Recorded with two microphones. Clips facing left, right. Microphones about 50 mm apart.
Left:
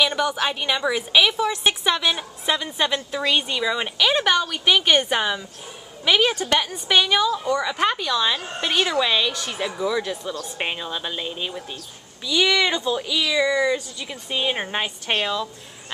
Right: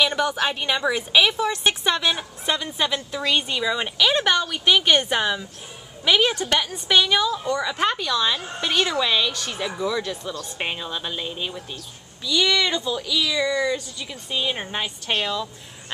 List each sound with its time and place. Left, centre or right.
0.0 s speech: centre
1.5 s speech: centre
12.3 s speech: centre